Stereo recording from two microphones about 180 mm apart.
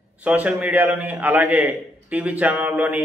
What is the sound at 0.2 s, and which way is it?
A man's voice, 10° right (ahead or behind).